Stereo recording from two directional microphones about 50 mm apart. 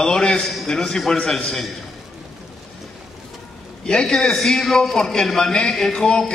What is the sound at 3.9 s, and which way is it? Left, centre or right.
A man's voice, centre.